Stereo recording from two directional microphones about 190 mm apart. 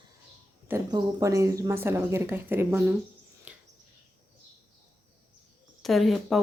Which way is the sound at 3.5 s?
5° right (ahead or behind).